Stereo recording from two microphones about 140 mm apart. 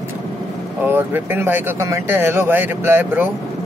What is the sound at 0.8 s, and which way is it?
Speech, 15° right (ahead or behind).